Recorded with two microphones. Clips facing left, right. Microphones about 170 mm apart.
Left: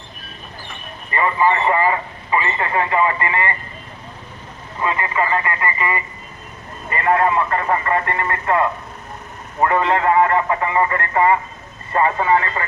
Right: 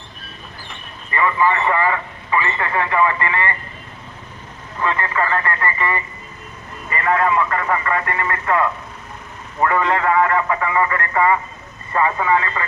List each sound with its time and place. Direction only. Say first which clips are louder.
1.1 s speech: even; 30° left (ahead or behind)
4.8 s speech: even; 15° left (ahead or behind)
6.9 s speech: left 1 dB; 30° left (ahead or behind)